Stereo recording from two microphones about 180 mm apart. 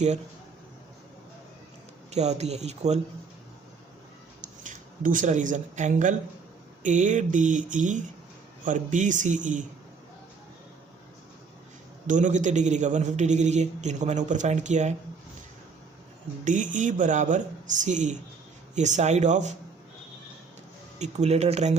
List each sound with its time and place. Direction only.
2.0 s a man's voice: 40° right (ahead or behind)
4.4 s speech: 45° right (ahead or behind)
12.0 s a man's voice: 45° right (ahead or behind)
16.4 s a man's voice: 45° right (ahead or behind)
21.0 s a man's voice: 35° right (ahead or behind)